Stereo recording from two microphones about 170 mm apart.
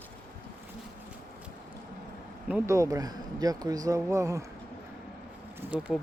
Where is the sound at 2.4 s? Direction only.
10° right (ahead or behind).